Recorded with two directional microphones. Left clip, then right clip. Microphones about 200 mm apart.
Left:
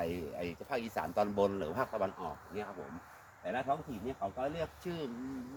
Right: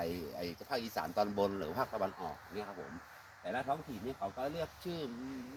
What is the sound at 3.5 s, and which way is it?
Speech, 5° left (ahead or behind).